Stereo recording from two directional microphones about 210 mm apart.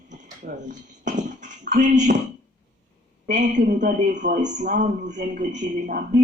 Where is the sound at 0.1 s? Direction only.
35° right (ahead or behind).